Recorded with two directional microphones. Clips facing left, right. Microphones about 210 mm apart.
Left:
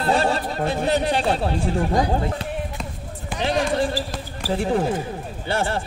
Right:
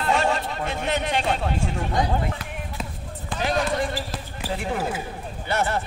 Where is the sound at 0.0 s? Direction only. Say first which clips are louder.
Left 2 dB; 35° left (ahead or behind).